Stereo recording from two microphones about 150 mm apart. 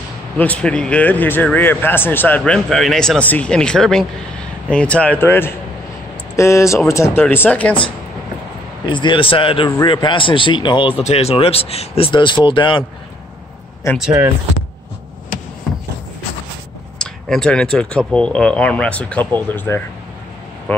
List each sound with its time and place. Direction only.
0.4 s speech: 10° left (ahead or behind)
8.8 s speech: 30° left (ahead or behind)
17.0 s speech: 5° left (ahead or behind)